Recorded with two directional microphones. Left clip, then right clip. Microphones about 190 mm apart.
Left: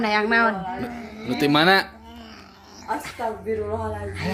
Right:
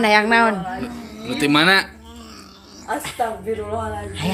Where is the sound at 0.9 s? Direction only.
10° left (ahead or behind).